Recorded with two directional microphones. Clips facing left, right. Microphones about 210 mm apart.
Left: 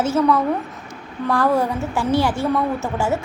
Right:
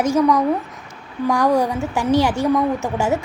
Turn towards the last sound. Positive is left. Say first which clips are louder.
# right 2 dB
turn(degrees=-15)  # may be behind; listen again after turning